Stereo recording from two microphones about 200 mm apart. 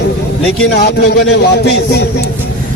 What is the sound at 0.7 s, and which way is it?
A man's voice, 50° left (ahead or behind).